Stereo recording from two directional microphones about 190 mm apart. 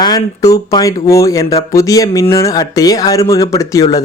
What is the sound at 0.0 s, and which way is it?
Speech, 20° left (ahead or behind).